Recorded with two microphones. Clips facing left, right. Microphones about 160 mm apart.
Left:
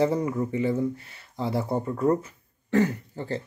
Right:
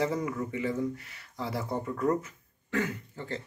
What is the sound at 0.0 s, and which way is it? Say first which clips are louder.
Speech: left 6 dB; 30° left (ahead or behind).